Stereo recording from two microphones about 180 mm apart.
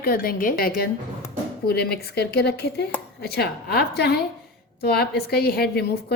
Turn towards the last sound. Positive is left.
turn(degrees=60)  # may be behind; listen again after turning